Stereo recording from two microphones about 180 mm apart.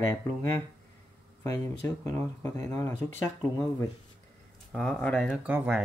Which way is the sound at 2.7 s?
15° left (ahead or behind).